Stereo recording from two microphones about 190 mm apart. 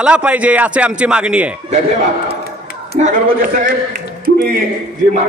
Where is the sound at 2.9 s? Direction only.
40° right (ahead or behind).